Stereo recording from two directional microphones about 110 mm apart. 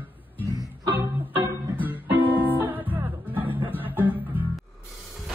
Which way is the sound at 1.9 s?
15° right (ahead or behind).